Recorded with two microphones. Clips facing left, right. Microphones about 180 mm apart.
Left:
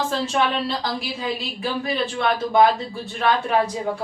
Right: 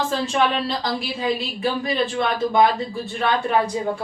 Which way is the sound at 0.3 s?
Centre (ahead or behind).